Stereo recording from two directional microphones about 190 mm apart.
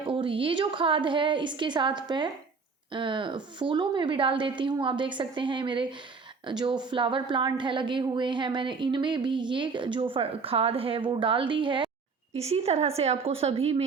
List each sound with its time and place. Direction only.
0.0 s a woman's voice: 25° right (ahead or behind)